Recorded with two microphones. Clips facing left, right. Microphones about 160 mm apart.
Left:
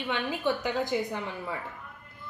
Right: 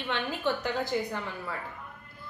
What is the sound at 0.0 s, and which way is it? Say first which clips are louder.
A woman's voice: left 1 dB; 10° left (ahead or behind).